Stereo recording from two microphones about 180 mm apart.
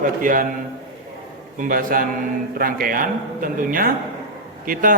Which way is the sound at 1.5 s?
50° right (ahead or behind).